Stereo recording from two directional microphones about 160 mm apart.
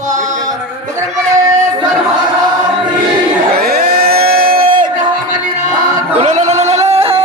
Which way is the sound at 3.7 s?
70° right (ahead or behind).